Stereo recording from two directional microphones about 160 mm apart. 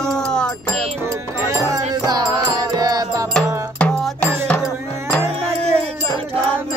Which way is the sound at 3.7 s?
5° left (ahead or behind).